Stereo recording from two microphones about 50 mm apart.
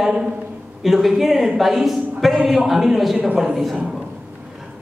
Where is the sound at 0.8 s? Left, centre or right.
Centre.